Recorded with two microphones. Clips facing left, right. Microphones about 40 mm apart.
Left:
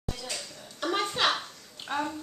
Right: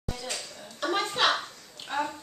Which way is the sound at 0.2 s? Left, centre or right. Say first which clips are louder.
Right 2 dB; centre.